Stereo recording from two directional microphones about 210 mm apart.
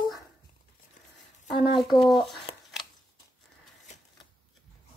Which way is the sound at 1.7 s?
Centre (ahead or behind).